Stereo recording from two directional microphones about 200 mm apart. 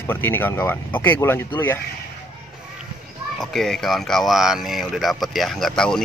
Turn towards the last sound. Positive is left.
turn(degrees=5)  # may be behind; listen again after turning